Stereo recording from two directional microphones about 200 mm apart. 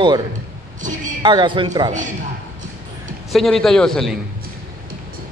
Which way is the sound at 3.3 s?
Centre (ahead or behind).